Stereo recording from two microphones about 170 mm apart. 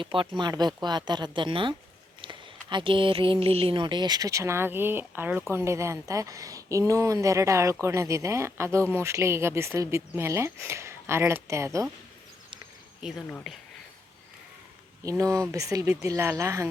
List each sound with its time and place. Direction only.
0.0 s speech: 30° right (ahead or behind)
2.2 s a sound: 30° right (ahead or behind)
3.4 s a woman's voice: 35° right (ahead or behind); by 11.9 s 15° right (ahead or behind)
13.0 s speech: centre (ahead or behind)
15.2 s a woman's voice: 20° right (ahead or behind)